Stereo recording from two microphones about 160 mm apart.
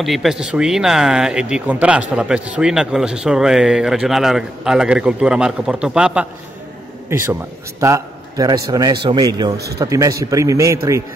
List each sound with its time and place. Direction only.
0.0 s a man's voice: centre (ahead or behind); by 10.8 s 20° right (ahead or behind)